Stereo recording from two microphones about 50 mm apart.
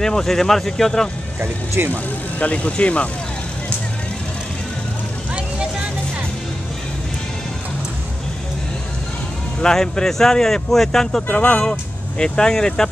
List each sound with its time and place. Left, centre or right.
0.0 s speech: centre
1.9 s speech: left
9.6 s speech: centre
11.2 s speech: left